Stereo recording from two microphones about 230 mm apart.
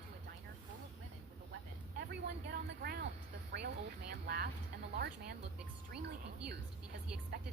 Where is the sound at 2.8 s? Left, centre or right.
Right.